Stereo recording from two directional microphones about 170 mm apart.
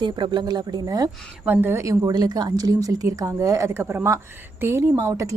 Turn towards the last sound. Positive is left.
turn(degrees=-20)  # may be behind; listen again after turning